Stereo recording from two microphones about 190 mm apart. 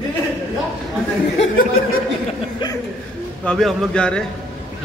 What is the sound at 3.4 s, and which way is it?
Speech, centre (ahead or behind).